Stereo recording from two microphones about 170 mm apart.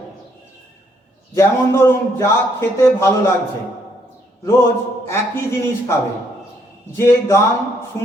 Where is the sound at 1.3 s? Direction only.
15° left (ahead or behind).